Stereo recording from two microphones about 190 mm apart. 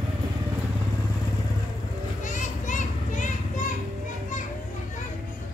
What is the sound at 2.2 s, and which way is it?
Children playing, 40° left (ahead or behind).